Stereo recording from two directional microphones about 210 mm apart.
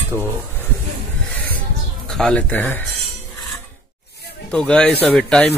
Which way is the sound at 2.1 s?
5° left (ahead or behind).